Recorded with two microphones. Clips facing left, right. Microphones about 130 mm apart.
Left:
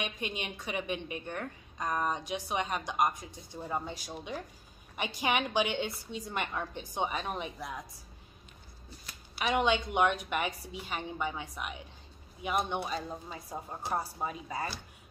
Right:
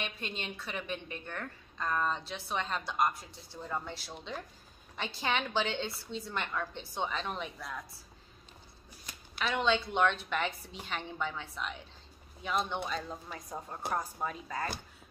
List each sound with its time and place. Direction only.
0.0 s a woman's voice: 15° left (ahead or behind)
9.4 s a woman's voice: 15° left (ahead or behind)